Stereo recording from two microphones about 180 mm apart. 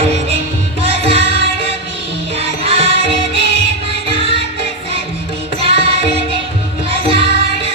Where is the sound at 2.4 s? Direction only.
35° right (ahead or behind).